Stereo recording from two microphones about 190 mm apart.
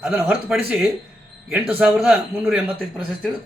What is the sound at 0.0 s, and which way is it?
A man's voice, 5° right (ahead or behind).